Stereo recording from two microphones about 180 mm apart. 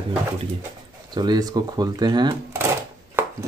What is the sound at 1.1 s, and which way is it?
Speech, 25° right (ahead or behind).